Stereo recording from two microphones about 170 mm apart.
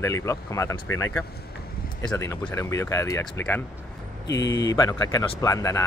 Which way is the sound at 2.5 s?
15° left (ahead or behind).